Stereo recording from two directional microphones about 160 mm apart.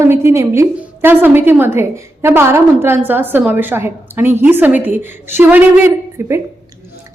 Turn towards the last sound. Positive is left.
turn(degrees=-15)  # may be behind; listen again after turning